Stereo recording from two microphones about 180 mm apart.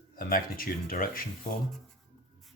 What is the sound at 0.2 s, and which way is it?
Speech, 50° left (ahead or behind).